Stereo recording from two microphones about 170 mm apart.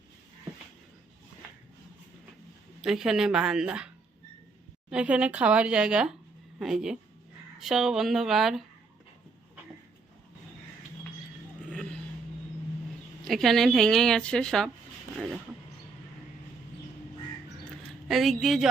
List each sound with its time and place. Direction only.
2.8 s a woman's voice: 5° right (ahead or behind)
11.7 s vehicle: 5° left (ahead or behind)
13.2 s a woman's voice: centre (ahead or behind)
18.1 s a woman's voice: centre (ahead or behind)